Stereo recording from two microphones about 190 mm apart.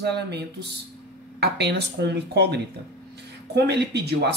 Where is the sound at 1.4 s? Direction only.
60° right (ahead or behind).